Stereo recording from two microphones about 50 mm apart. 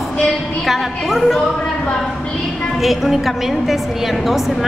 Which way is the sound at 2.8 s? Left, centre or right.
Centre.